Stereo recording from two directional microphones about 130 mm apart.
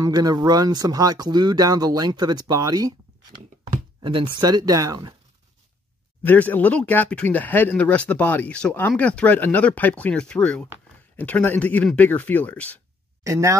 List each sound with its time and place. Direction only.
0.0 s speech: 30° right (ahead or behind)
3.7 s speech: 40° right (ahead or behind)
6.2 s speech: 15° left (ahead or behind)
13.2 s speech: 25° right (ahead or behind)